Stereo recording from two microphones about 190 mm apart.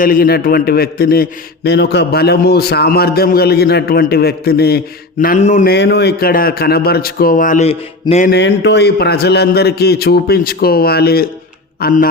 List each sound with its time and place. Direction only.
0.0 s a man's voice: 50° left (ahead or behind)
5.2 s a sound: 45° left (ahead or behind)
5.6 s a man's voice: 60° left (ahead or behind); by 7.8 s 40° left (ahead or behind)
8.3 s a man's voice: 65° left (ahead or behind)